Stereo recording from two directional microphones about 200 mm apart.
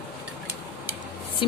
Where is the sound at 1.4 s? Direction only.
25° left (ahead or behind).